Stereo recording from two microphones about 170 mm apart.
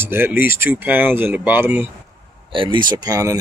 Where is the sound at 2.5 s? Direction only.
25° right (ahead or behind).